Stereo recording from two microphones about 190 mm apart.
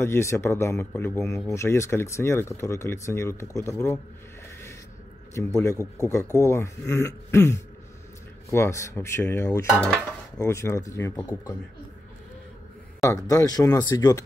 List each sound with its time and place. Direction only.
0.0 s speech: 15° left (ahead or behind)
5.3 s speech: 15° left (ahead or behind)
9.8 s dishes: 5° left (ahead or behind)
10.4 s speech: 15° left (ahead or behind)
13.0 s speech: 15° left (ahead or behind)